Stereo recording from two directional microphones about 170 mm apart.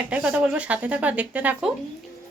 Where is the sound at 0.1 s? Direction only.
5° right (ahead or behind).